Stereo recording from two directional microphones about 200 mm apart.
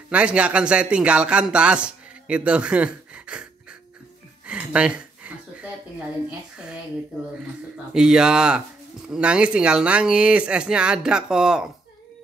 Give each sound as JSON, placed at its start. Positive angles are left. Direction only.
{"t": 0.1, "sound": "speech", "side_deg": -5}
{"t": 4.5, "sound": "a sound", "side_deg": -5}
{"t": 6.5, "sound": "speech", "side_deg": -5}
{"t": 7.9, "sound": "speech", "side_deg": -5}